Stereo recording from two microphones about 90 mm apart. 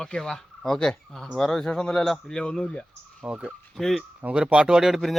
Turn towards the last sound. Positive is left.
turn(degrees=-5)  # may be behind; listen again after turning